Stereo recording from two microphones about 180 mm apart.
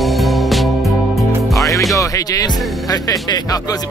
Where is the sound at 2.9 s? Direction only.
20° left (ahead or behind).